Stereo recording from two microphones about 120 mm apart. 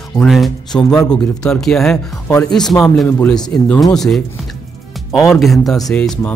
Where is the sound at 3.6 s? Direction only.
5° left (ahead or behind).